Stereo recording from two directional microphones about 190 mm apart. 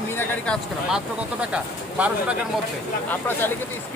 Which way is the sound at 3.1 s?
10° left (ahead or behind).